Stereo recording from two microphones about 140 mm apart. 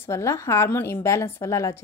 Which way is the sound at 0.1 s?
20° left (ahead or behind).